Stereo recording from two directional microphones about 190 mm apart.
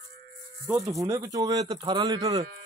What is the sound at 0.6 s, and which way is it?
Speech, 15° right (ahead or behind).